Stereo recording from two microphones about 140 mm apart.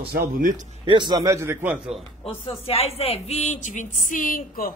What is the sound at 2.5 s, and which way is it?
A woman's voice, 45° left (ahead or behind).